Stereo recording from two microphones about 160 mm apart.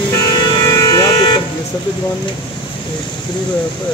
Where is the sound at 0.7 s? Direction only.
25° left (ahead or behind).